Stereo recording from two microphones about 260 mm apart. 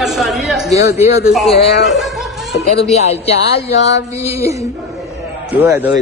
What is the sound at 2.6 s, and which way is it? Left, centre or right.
Speech, left.